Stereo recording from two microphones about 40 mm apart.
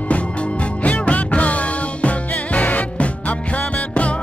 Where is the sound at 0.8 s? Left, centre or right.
Left.